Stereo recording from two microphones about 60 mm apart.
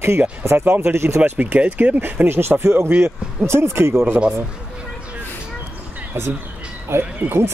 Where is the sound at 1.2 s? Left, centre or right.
Right.